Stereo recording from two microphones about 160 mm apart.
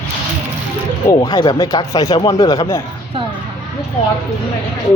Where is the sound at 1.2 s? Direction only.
30° left (ahead or behind).